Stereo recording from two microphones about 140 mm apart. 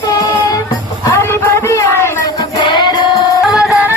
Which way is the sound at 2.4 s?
30° left (ahead or behind).